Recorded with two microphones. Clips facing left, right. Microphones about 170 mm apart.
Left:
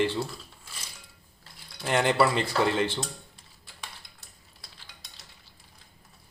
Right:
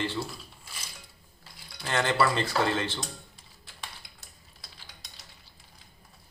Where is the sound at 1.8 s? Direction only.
15° left (ahead or behind).